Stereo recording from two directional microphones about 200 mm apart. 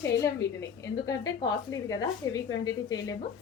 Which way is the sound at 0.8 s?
15° left (ahead or behind).